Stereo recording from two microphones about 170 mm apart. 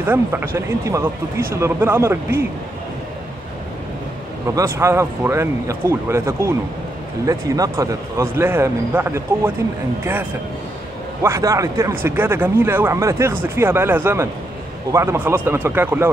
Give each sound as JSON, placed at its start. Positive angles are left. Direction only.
{"t": 0.0, "sound": "speech", "side_deg": -10}
{"t": 4.6, "sound": "speech", "side_deg": -15}
{"t": 11.2, "sound": "speech", "side_deg": -15}